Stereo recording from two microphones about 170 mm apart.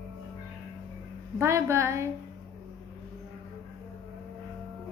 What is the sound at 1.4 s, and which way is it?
Speech, 15° right (ahead or behind).